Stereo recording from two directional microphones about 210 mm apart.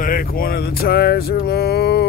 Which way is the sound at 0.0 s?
45° left (ahead or behind).